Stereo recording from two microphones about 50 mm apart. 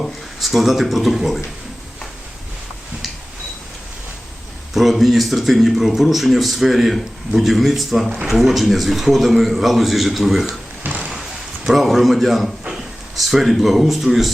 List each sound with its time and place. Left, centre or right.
0.0 s speech: centre
4.7 s speech: centre
10.8 s a sound: right
11.2 s a man's voice: centre